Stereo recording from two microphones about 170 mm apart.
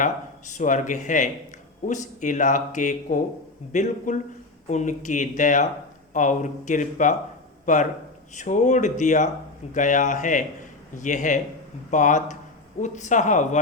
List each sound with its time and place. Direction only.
0.0 s speech: 45° left (ahead or behind)